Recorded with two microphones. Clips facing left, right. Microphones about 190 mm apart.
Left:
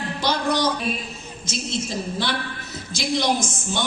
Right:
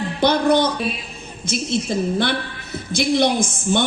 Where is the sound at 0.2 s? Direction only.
55° right (ahead or behind).